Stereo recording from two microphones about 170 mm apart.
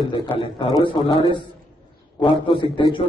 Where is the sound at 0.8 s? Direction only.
30° left (ahead or behind).